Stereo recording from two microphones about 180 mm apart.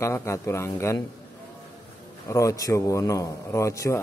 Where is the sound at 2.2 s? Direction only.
15° left (ahead or behind).